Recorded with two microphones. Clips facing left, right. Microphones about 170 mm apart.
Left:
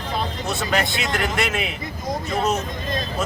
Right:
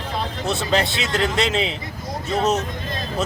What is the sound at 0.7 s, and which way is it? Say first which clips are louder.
Speech: right 2 dB; 25° right (ahead or behind).